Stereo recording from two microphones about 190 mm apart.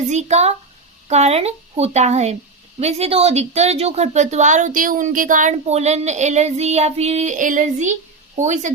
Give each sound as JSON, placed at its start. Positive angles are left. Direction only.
{"t": 0.1, "sound": "a woman's voice", "side_deg": -35}